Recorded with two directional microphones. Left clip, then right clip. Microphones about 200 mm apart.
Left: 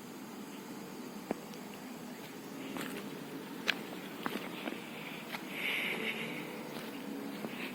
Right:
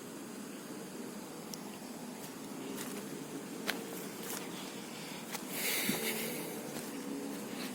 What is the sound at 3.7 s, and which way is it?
Walk, 10° right (ahead or behind).